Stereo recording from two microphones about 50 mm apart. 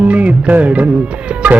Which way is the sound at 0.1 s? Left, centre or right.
Right.